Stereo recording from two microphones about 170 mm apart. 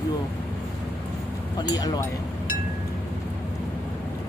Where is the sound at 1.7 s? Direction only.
20° left (ahead or behind).